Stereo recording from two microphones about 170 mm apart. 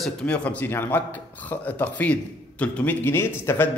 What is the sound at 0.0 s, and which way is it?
A man's voice, 5° left (ahead or behind).